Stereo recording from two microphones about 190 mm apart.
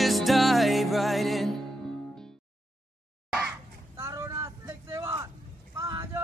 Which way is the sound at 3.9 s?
15° right (ahead or behind).